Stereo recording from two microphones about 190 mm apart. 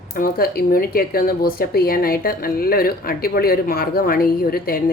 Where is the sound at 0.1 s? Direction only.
50° left (ahead or behind).